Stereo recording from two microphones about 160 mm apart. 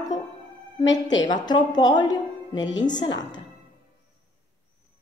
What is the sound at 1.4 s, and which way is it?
A woman's voice, 25° left (ahead or behind).